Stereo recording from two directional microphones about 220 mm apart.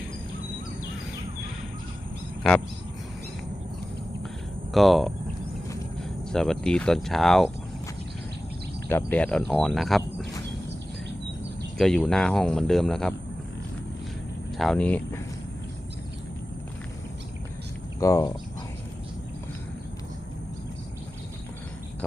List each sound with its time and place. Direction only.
4.7 s speech: centre (ahead or behind)
6.3 s speech: centre (ahead or behind)
8.9 s speech: 10° left (ahead or behind)
11.8 s speech: 5° left (ahead or behind)
14.6 s speech: 5° left (ahead or behind)
18.0 s speech: 15° left (ahead or behind)